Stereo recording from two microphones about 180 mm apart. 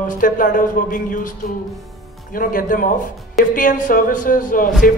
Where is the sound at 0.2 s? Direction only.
50° left (ahead or behind).